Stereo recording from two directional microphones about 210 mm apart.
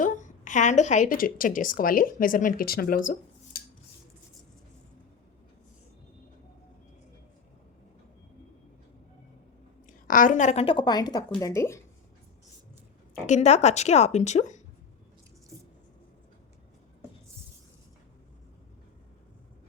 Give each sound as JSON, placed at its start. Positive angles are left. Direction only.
{"t": 0.0, "sound": "a woman's voice", "side_deg": 35}
{"t": 10.1, "sound": "speech", "side_deg": 40}
{"t": 13.2, "sound": "a woman's voice", "side_deg": 35}